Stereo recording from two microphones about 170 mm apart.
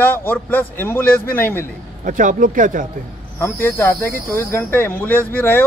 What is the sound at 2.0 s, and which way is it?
Speech, 50° right (ahead or behind).